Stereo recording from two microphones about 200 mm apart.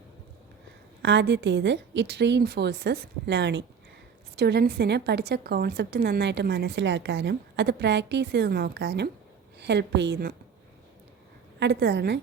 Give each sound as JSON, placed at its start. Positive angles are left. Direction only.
{"t": 1.0, "sound": "a woman's voice", "side_deg": -60}
{"t": 11.6, "sound": "a woman's voice", "side_deg": -60}